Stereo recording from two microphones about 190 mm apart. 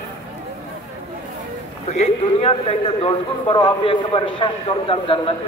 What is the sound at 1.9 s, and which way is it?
A man's voice, 35° left (ahead or behind).